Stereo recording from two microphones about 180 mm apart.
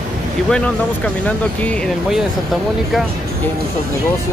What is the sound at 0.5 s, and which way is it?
Speech, 5° left (ahead or behind).